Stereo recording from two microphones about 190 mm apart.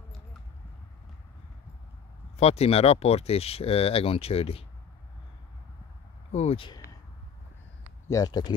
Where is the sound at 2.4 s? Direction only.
35° left (ahead or behind).